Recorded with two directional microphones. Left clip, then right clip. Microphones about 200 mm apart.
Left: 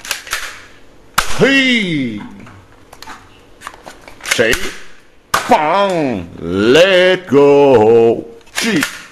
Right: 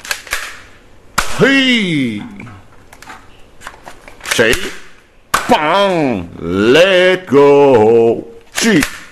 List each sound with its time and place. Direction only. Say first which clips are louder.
1.4 s whip: right 1 dB; 10° right (ahead or behind)
4.2 s cap gun: right 1 dB; 15° right (ahead or behind)
5.5 s speech: even; 15° right (ahead or behind)
8.5 s speech: right 4 dB; 30° right (ahead or behind)